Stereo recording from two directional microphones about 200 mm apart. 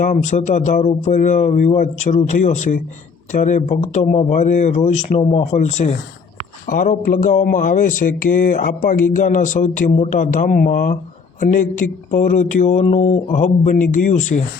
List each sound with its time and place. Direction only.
0.0 s speech: 40° left (ahead or behind)